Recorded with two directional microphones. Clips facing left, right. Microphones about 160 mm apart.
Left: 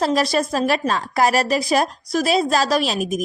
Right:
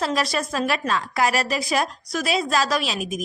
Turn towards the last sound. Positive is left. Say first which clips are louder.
# left 5 dB
turn(degrees=45)  # may be behind; listen again after turning